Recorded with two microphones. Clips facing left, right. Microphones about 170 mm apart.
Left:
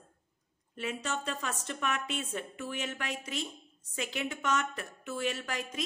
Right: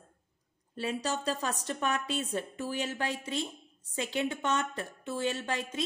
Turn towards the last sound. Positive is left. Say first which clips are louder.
# right 2 dB
turn(degrees=-30)  # may be behind; listen again after turning